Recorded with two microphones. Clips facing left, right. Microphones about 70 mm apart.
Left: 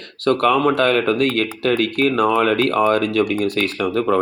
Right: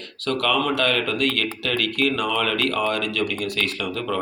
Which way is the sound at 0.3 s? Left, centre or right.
Left.